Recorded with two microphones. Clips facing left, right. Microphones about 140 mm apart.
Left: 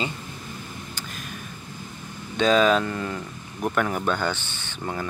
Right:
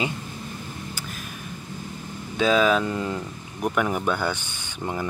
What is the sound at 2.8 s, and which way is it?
Speech, 15° right (ahead or behind).